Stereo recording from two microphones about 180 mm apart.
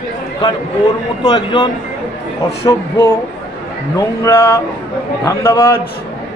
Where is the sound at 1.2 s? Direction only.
25° left (ahead or behind).